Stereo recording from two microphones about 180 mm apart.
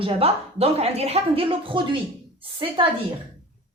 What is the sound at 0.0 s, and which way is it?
A woman's voice, 35° right (ahead or behind).